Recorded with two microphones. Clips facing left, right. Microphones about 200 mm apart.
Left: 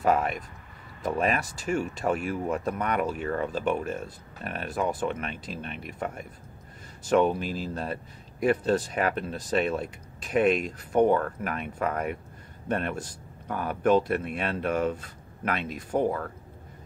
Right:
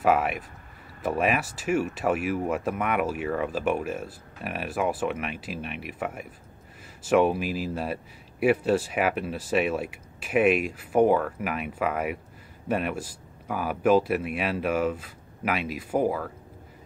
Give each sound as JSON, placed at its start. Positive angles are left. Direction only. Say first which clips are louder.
{"t": 0.0, "sound": "speech", "louder": "right 1 dB", "side_deg": -5}